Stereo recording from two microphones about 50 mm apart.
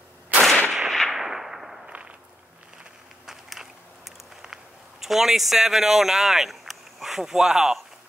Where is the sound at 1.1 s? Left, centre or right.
Centre.